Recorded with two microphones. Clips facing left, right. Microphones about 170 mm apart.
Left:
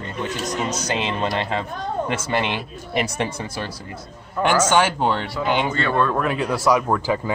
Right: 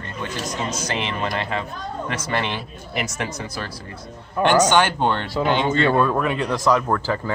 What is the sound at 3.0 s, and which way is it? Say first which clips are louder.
Speech: left 3 dB; 30° left (ahead or behind).